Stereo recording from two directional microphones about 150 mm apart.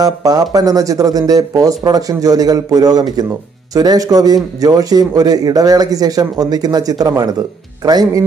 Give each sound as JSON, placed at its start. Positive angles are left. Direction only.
{"t": 0.0, "sound": "speech", "side_deg": -25}